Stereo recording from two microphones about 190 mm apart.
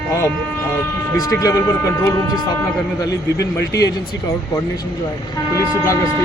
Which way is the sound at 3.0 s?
15° left (ahead or behind).